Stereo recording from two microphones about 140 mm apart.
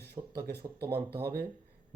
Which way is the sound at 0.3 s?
90° right.